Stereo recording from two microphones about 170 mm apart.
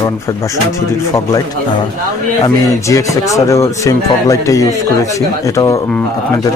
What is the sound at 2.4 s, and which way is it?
Speech, 20° left (ahead or behind).